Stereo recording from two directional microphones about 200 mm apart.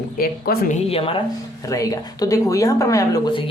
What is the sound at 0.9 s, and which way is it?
Speech, 25° left (ahead or behind).